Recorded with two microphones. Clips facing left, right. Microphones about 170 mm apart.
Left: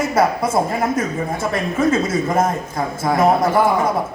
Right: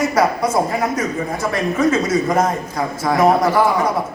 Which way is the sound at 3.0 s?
25° left (ahead or behind).